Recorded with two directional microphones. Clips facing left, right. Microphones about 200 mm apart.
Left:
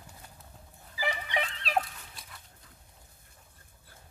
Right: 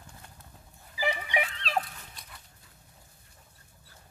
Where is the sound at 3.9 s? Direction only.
55° left (ahead or behind).